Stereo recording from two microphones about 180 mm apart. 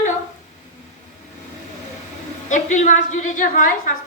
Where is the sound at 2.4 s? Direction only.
45° left (ahead or behind).